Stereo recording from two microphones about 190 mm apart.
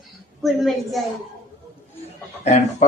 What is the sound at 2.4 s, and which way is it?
Speech, 35° left (ahead or behind).